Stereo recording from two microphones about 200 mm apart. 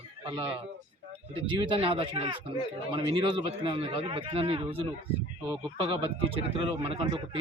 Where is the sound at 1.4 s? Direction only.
25° right (ahead or behind).